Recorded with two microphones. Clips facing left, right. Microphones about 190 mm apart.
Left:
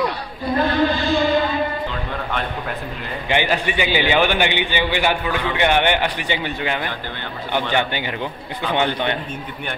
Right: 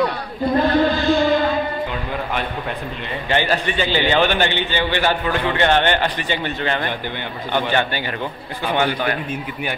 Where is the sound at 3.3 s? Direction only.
15° left (ahead or behind).